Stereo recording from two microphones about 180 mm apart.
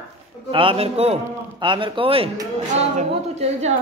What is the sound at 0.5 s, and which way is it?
A man's voice, 30° right (ahead or behind).